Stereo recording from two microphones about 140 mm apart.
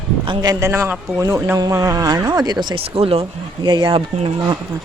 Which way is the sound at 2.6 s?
40° right (ahead or behind).